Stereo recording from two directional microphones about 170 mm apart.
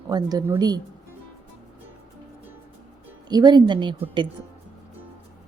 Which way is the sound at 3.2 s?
25° right (ahead or behind).